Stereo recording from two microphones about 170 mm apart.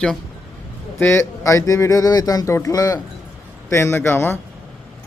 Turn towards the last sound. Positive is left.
turn(degrees=10)  # may be behind; listen again after turning